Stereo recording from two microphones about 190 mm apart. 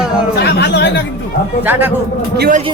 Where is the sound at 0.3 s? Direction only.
60° left (ahead or behind).